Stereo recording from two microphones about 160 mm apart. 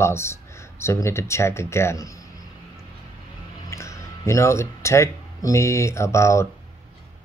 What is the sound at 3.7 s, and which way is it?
Speech, 20° left (ahead or behind).